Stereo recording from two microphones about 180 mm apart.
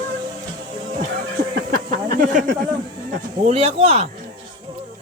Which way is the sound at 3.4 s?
35° right (ahead or behind).